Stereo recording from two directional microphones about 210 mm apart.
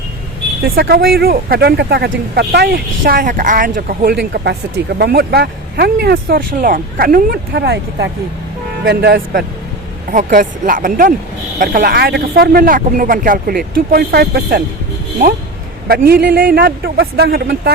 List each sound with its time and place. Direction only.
0.6 s speech: 45° right (ahead or behind)
15.9 s speech: 45° right (ahead or behind)